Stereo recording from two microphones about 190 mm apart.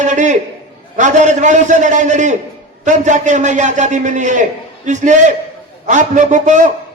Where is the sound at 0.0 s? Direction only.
40° right (ahead or behind).